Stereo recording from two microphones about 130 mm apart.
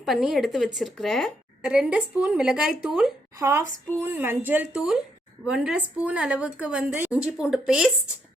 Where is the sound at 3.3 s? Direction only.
25° right (ahead or behind).